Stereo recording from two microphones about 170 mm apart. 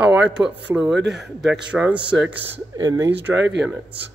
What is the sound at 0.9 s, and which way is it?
Speech, 90° right.